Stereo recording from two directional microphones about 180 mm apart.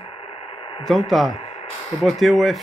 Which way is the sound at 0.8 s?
Centre (ahead or behind).